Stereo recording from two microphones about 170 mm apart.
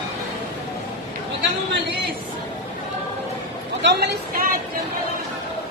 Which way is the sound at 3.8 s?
80° right.